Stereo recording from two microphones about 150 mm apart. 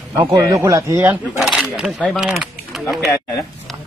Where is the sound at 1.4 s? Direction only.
5° right (ahead or behind).